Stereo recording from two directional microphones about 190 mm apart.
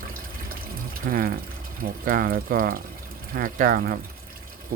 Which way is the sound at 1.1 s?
50° right (ahead or behind).